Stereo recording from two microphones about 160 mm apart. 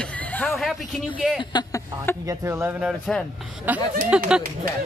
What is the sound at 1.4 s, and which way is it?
Speech, 25° left (ahead or behind).